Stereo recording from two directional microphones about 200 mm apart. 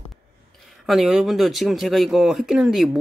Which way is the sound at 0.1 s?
Centre (ahead or behind).